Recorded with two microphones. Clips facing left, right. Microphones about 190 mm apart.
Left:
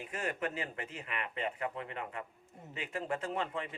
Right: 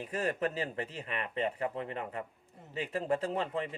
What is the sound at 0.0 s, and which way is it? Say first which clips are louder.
Speech: right 4 dB; 35° right (ahead or behind).